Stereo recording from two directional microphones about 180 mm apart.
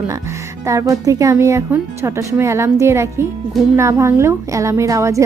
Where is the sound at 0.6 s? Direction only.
15° right (ahead or behind).